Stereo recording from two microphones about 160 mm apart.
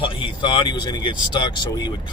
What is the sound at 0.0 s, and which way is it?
Speech, 30° left (ahead or behind).